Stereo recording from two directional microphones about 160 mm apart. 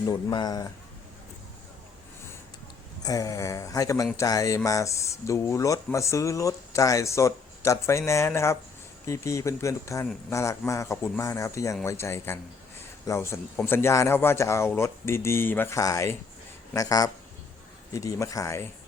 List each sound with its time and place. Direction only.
0.1 s speech: 25° left (ahead or behind)
3.0 s speech: 20° left (ahead or behind)